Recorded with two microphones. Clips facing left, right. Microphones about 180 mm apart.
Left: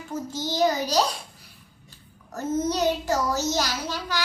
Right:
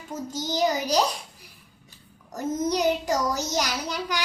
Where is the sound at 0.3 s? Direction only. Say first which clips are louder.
Left 1 dB; 10° right (ahead or behind).